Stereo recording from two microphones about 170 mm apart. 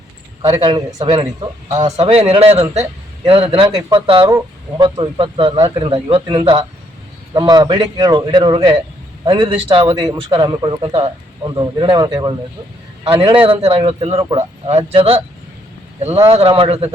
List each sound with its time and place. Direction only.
1.0 s a man's voice: 25° right (ahead or behind)